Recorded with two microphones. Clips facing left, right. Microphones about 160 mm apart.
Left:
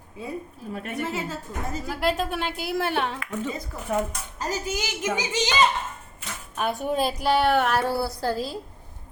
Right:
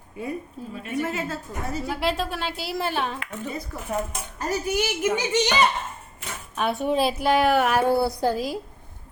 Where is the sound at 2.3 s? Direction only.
55° left (ahead or behind).